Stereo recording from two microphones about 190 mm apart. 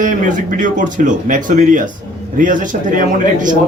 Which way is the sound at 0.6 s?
40° right (ahead or behind).